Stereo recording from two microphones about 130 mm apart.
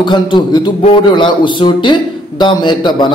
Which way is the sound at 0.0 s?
35° left (ahead or behind).